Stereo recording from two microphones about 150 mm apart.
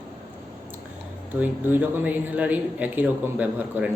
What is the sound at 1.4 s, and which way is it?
A man's voice, 10° right (ahead or behind).